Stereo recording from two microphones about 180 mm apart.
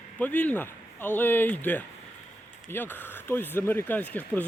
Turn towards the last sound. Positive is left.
turn(degrees=10)  # may be behind; listen again after turning